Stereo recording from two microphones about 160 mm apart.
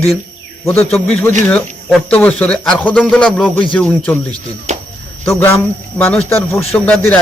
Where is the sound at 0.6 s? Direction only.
15° left (ahead or behind).